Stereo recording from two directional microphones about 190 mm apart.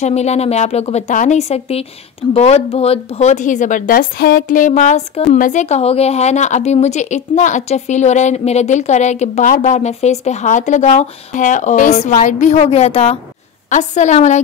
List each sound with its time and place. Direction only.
0.0 s speech: 35° left (ahead or behind)